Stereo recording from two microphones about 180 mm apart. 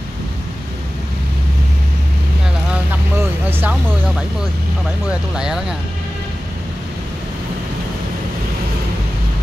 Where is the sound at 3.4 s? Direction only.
10° right (ahead or behind).